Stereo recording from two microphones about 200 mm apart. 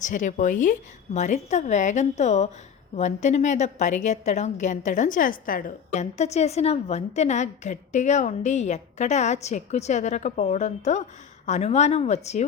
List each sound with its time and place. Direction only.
0.0 s a woman's voice: 40° left (ahead or behind)